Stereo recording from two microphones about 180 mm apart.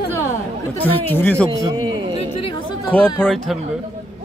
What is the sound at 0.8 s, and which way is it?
Speech, 10° left (ahead or behind).